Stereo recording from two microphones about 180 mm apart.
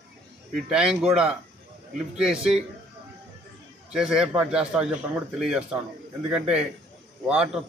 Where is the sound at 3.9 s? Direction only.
5° right (ahead or behind).